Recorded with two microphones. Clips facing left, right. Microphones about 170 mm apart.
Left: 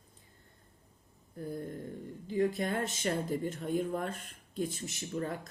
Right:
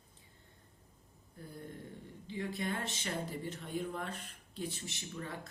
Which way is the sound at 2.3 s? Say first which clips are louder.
Left 8 dB; 45° left (ahead or behind).